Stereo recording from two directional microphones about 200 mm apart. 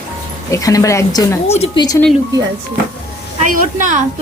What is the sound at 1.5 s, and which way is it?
Speech, 30° left (ahead or behind).